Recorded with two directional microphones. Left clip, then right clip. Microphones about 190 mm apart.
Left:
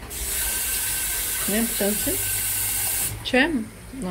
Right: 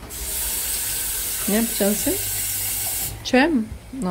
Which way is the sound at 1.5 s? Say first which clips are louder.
Right 3 dB; 30° right (ahead or behind).